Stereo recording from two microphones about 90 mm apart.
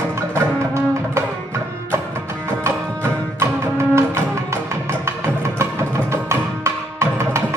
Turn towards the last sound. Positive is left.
turn(degrees=-30)  # may be behind; listen again after turning